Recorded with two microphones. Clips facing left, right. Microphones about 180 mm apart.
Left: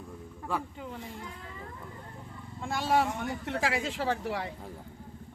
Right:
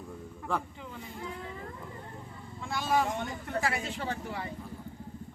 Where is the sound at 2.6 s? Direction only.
65° left (ahead or behind).